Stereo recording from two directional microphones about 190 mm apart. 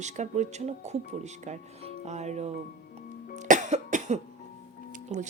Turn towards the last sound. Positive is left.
turn(degrees=-40)  # may be behind; listen again after turning